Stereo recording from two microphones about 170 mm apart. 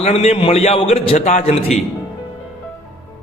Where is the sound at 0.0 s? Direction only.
35° left (ahead or behind).